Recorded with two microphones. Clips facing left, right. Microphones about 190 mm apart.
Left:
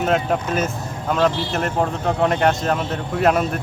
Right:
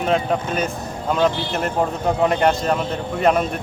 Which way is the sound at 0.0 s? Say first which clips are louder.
Even; 5° left (ahead or behind).